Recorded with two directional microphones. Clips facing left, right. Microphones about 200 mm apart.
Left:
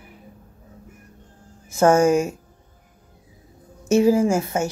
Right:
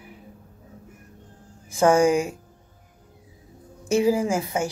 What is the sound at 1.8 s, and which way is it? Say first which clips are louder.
Speech: left 2 dB; 15° right (ahead or behind).